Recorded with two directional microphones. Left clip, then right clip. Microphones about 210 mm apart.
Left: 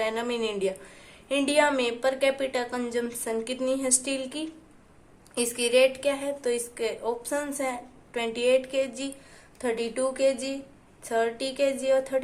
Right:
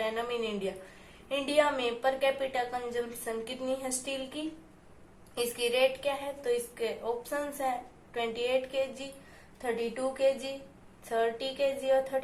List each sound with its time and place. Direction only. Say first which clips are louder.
0.0 s a woman's voice: left 4 dB; 45° left (ahead or behind)
5.3 s a woman's voice: left 6 dB; 45° left (ahead or behind)